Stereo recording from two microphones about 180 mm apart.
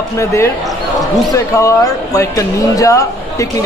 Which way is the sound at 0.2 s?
15° left (ahead or behind).